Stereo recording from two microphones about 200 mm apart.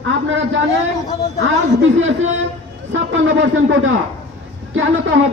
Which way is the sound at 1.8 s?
70° right (ahead or behind).